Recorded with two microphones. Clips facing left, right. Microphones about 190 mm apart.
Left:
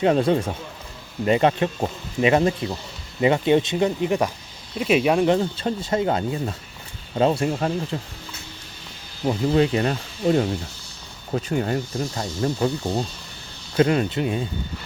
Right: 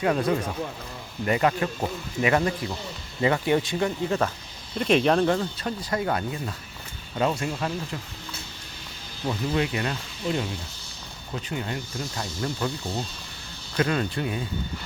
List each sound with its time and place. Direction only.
0.0 s speech: 25° left (ahead or behind)
9.2 s speech: 30° left (ahead or behind)
10.2 s speech: 45° left (ahead or behind)
11.9 s speech: 30° left (ahead or behind)